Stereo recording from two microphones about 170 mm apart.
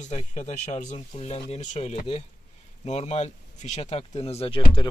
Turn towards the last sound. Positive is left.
turn(degrees=30)  # may be behind; listen again after turning